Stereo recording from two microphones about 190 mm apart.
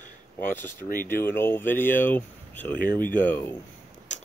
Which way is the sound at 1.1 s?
10° left (ahead or behind).